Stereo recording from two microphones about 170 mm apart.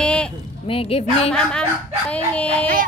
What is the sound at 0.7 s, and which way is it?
Speech, 35° left (ahead or behind).